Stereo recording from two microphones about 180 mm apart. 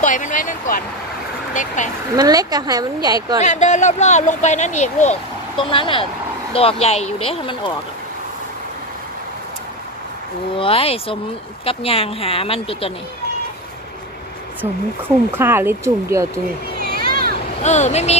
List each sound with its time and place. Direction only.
0.0 s speech: 45° left (ahead or behind)
2.1 s a woman's voice: 20° right (ahead or behind)
3.3 s speech: 40° left (ahead or behind)
5.6 s speech: 30° left (ahead or behind)
10.6 s speech: 30° left (ahead or behind)
14.6 s speech: 10° right (ahead or behind)
16.9 s a sound: 55° right (ahead or behind)
17.6 s speech: 40° left (ahead or behind)